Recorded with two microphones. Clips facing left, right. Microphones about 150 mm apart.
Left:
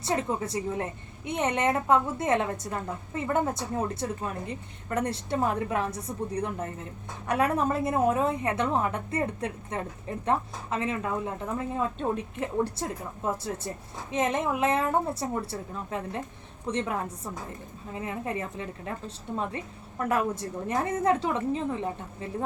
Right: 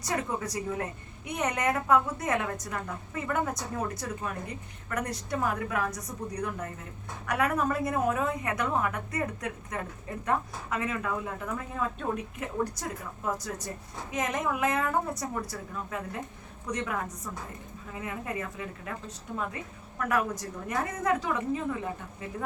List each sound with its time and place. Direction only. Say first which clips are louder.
0.0 s a woman's voice: left 3 dB; 25° left (ahead or behind)